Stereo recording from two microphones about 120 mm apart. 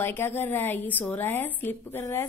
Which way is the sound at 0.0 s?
20° left (ahead or behind).